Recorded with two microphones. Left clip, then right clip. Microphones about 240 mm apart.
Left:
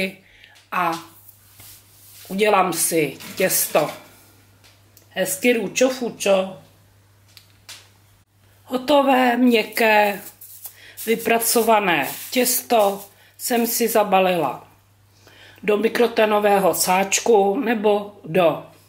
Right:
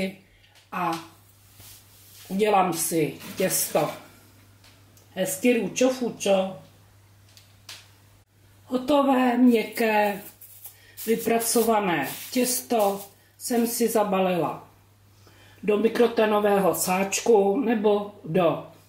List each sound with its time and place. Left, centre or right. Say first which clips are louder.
0.7 s speech: left 6 dB; centre
2.3 s speech: left 4 dB; centre
5.1 s speech: left 4 dB; centre
8.6 s speech: left 5 dB; centre
13.0 s a sound: left 6 dB; centre
14.0 s speech: left 6 dB; centre
15.6 s speech: left 3 dB; centre